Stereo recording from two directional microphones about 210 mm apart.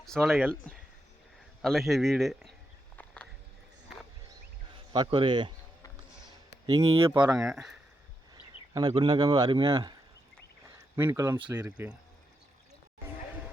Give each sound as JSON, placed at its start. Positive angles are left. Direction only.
{"t": 0.0, "sound": "a man's voice", "side_deg": 0}
{"t": 4.7, "sound": "speech", "side_deg": -20}
{"t": 6.7, "sound": "speech", "side_deg": -15}
{"t": 7.5, "sound": "a man's voice", "side_deg": 0}
{"t": 8.7, "sound": "a man's voice", "side_deg": -20}
{"t": 10.8, "sound": "a sound", "side_deg": -10}
{"t": 11.4, "sound": "speech", "side_deg": -10}